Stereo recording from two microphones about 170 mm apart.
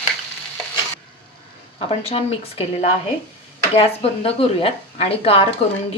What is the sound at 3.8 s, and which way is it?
Speech, 35° left (ahead or behind).